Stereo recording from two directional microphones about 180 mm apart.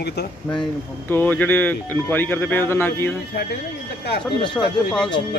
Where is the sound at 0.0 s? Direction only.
65° left (ahead or behind).